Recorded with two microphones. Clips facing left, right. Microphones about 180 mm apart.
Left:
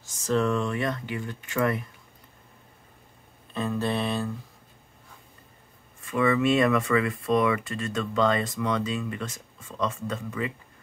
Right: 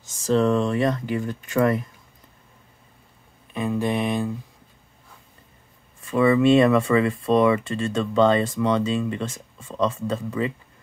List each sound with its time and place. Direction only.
0.0 s speech: 30° right (ahead or behind)
3.5 s speech: 15° right (ahead or behind)
5.9 s speech: 30° right (ahead or behind)